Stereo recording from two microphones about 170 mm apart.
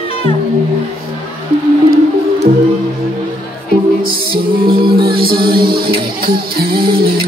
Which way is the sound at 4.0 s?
60° right (ahead or behind).